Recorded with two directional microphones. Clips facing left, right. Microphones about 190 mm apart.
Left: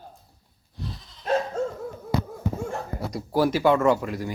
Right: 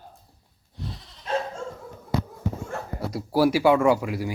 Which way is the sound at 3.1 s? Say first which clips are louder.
Right 2 dB; 10° right (ahead or behind).